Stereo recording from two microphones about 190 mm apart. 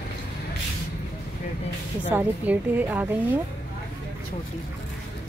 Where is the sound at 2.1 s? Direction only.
10° right (ahead or behind).